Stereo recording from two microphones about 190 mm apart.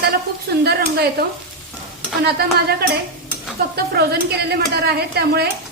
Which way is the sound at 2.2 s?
55° right (ahead or behind).